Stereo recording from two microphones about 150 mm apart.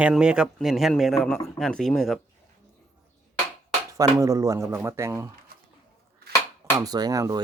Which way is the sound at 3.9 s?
20° right (ahead or behind).